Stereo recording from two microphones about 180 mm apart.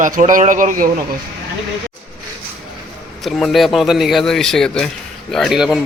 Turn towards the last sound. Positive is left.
turn(degrees=0)  # may be behind; listen again after turning